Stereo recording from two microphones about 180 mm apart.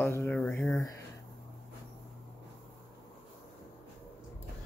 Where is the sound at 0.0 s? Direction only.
15° left (ahead or behind).